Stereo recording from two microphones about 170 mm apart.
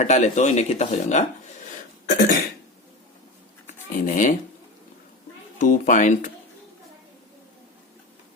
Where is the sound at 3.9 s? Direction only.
50° left (ahead or behind).